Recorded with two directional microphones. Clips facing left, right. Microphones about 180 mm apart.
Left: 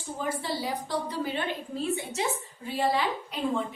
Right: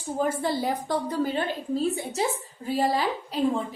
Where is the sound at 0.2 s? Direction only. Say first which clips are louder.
Right 6 dB; 50° right (ahead or behind).